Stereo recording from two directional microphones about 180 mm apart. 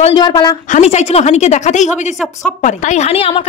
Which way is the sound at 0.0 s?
25° left (ahead or behind).